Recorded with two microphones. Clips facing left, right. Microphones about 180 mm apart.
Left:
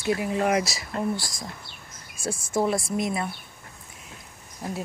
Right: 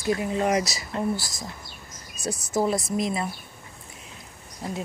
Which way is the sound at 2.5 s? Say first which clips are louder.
Even; centre (ahead or behind).